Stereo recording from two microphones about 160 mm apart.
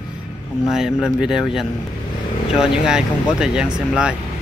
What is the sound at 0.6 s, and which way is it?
Speech, 5° right (ahead or behind).